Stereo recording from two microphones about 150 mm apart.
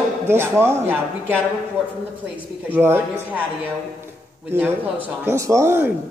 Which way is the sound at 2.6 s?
15° right (ahead or behind).